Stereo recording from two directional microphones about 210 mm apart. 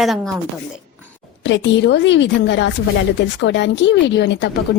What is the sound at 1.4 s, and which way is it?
Speech, 60° left (ahead or behind).